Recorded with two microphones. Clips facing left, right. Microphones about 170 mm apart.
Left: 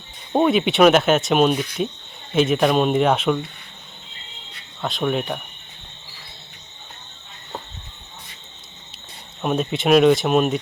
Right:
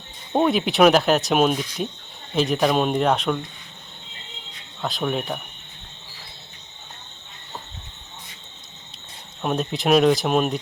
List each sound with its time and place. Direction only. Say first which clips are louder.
0.3 s speech: left 2 dB; centre (ahead or behind)
4.8 s speech: left 2 dB; centre (ahead or behind)
9.4 s speech: left 2 dB; centre (ahead or behind)